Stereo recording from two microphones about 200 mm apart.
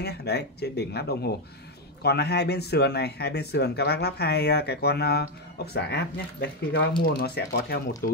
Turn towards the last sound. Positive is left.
turn(degrees=50)  # may be behind; listen again after turning